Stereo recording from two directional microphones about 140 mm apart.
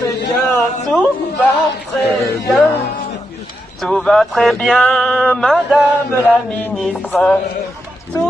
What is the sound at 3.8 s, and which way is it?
Speech, 5° left (ahead or behind).